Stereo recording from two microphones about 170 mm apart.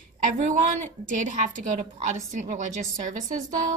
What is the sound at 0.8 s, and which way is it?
A woman's voice, 50° right (ahead or behind).